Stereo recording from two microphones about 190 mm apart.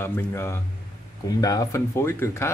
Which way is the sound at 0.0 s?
15° left (ahead or behind).